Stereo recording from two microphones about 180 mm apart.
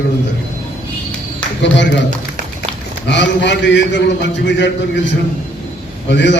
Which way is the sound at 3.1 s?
75° left (ahead or behind).